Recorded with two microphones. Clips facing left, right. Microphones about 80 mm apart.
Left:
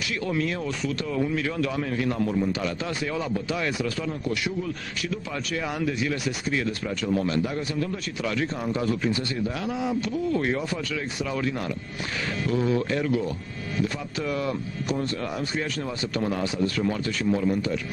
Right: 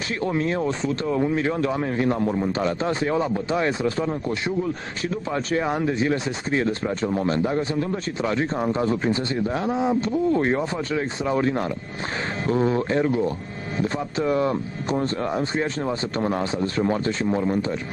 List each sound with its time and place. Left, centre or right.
0.2 s a man's voice: right